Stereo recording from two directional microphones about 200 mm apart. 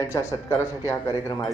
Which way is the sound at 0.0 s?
15° left (ahead or behind).